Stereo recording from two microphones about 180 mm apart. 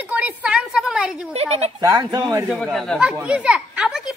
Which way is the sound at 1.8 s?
20° right (ahead or behind).